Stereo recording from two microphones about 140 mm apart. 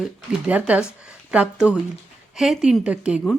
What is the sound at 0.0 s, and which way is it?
A woman's voice, 10° right (ahead or behind).